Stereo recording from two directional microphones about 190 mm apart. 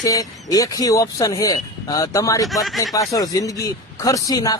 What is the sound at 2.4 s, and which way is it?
Speech, centre (ahead or behind).